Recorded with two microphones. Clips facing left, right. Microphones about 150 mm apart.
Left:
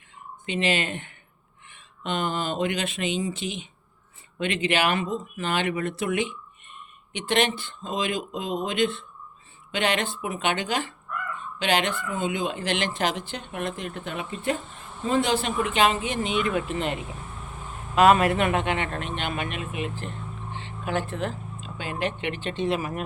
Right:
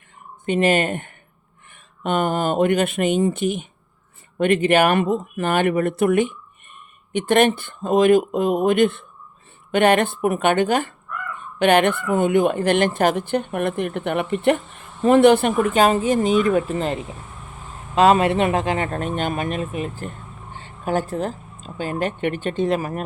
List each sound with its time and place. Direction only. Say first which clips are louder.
0.4 s speech: right 8 dB; 50° right (ahead or behind)